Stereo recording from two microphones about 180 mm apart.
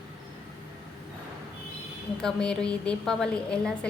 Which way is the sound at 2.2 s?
5° left (ahead or behind).